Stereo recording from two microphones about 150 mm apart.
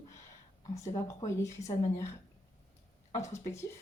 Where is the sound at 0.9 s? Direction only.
20° left (ahead or behind).